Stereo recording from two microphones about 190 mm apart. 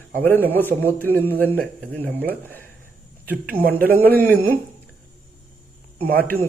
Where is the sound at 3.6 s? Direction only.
50° right (ahead or behind).